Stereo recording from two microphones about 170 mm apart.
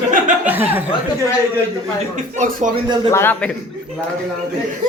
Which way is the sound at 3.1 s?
15° left (ahead or behind).